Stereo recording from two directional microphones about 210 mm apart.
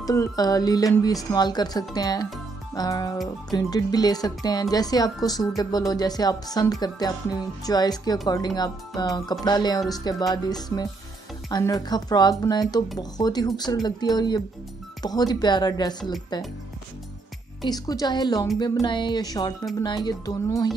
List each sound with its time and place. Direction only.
0.0 s speech: 15° left (ahead or behind)
17.6 s speech: 20° left (ahead or behind)